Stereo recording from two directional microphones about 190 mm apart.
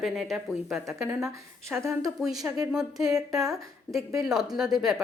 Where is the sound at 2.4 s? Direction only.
15° right (ahead or behind).